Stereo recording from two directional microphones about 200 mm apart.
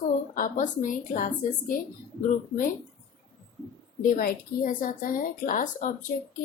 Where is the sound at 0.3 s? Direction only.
40° left (ahead or behind).